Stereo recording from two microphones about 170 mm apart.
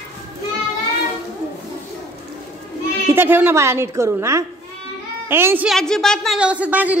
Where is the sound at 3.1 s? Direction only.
10° right (ahead or behind).